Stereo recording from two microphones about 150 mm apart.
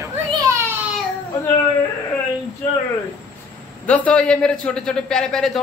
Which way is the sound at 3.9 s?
10° left (ahead or behind).